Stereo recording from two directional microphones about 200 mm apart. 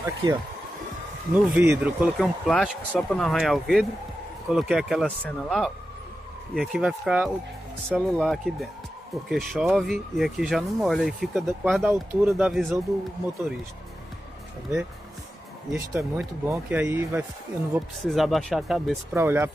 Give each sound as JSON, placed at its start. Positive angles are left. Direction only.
{"t": 0.0, "sound": "speech", "side_deg": -15}
{"t": 15.7, "sound": "speech", "side_deg": -15}
{"t": 19.1, "sound": "speech", "side_deg": -10}